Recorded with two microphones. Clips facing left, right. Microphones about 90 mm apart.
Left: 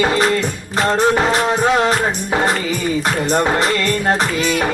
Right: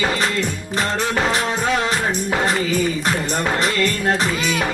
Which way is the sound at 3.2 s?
40° left (ahead or behind).